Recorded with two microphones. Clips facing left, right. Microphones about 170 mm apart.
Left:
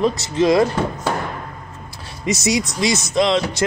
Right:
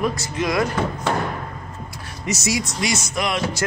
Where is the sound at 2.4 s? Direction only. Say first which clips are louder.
Left 4 dB; 20° left (ahead or behind).